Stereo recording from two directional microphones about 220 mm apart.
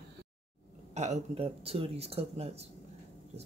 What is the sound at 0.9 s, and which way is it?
Speech, 30° right (ahead or behind).